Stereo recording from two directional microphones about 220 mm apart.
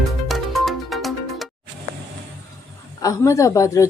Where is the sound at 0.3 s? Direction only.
Centre (ahead or behind).